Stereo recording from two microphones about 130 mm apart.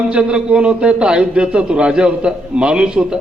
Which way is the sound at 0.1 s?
5° right (ahead or behind).